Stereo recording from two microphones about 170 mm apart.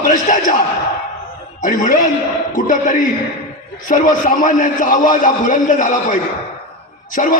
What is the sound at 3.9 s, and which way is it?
A man's voice, 50° left (ahead or behind).